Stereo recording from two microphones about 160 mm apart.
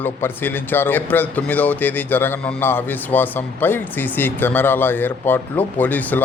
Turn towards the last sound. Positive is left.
turn(degrees=10)  # may be behind; listen again after turning